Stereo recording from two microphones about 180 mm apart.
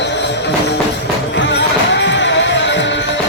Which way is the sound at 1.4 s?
75° left (ahead or behind).